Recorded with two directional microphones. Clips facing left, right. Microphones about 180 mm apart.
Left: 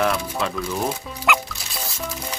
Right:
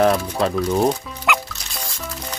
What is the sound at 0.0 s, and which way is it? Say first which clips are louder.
Speech: right 5 dB; 40° right (ahead or behind).